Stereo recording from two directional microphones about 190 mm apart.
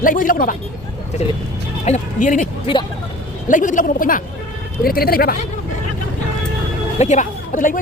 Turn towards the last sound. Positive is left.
turn(degrees=45)  # may be behind; listen again after turning